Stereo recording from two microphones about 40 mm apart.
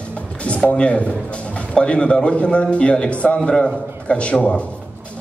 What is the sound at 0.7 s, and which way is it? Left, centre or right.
A man's voice, centre.